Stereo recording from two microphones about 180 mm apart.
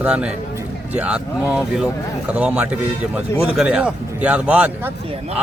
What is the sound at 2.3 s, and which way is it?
A man's voice, 5° right (ahead or behind).